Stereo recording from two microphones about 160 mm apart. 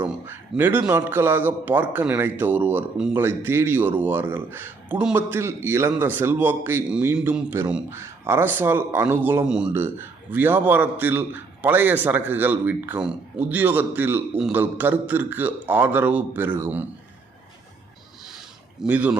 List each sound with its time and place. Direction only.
0.0 s a man's voice: 15° right (ahead or behind)
18.8 s a man's voice: 10° right (ahead or behind)